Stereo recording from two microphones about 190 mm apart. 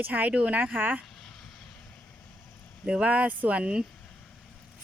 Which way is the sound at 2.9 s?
5° right (ahead or behind).